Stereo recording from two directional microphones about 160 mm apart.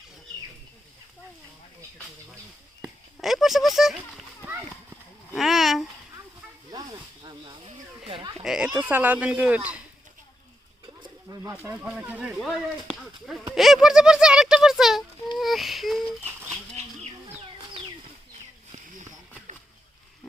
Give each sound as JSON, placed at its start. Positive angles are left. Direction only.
{"t": 3.2, "sound": "speech", "side_deg": 0}
{"t": 5.3, "sound": "a sound", "side_deg": 0}
{"t": 6.7, "sound": "snake", "side_deg": -25}
{"t": 8.4, "sound": "speech", "side_deg": -5}
{"t": 11.3, "sound": "pigeon", "side_deg": -25}
{"t": 11.6, "sound": "speech", "side_deg": -5}
{"t": 15.4, "sound": "a sound", "side_deg": 0}